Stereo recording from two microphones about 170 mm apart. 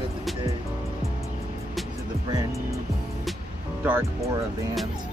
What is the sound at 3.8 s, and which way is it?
Speech, 10° right (ahead or behind).